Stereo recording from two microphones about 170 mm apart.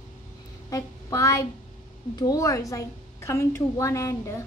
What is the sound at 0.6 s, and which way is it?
A woman's voice, 20° left (ahead or behind).